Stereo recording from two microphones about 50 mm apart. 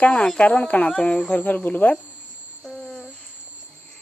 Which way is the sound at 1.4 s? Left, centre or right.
Left.